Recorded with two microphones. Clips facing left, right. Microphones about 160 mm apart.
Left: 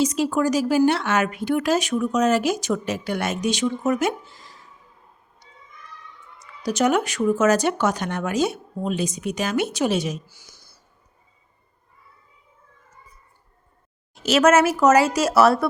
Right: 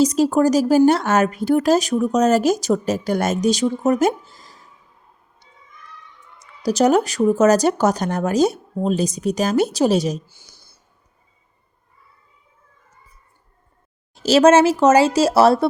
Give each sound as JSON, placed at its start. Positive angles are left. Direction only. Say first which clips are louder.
{"t": 0.0, "sound": "speech", "louder": "right 5 dB", "side_deg": -40}
{"t": 6.4, "sound": "speech", "louder": "right 4 dB", "side_deg": -35}
{"t": 10.2, "sound": "a sound", "louder": "even", "side_deg": -30}
{"t": 14.2, "sound": "speech", "louder": "right 4 dB", "side_deg": -35}